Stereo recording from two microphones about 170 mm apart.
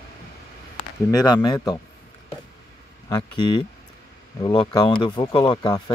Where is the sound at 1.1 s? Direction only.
25° left (ahead or behind).